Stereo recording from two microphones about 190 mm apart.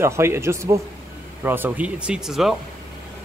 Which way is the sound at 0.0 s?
15° right (ahead or behind).